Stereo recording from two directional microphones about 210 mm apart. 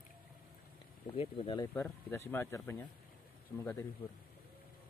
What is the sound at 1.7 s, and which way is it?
Speech, 10° left (ahead or behind).